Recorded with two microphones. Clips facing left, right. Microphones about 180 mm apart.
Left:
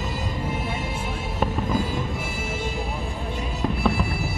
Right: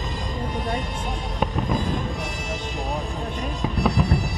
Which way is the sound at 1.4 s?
5° left (ahead or behind).